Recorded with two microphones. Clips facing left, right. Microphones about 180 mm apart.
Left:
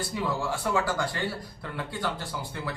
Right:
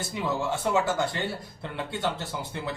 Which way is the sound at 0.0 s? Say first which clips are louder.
Right 1 dB; 20° right (ahead or behind).